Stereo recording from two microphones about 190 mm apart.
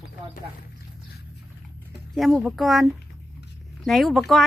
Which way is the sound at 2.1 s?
Centre (ahead or behind).